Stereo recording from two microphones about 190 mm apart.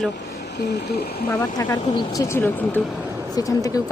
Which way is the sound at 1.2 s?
20° left (ahead or behind).